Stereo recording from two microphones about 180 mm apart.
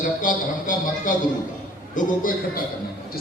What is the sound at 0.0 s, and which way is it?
A man's voice, 45° left (ahead or behind).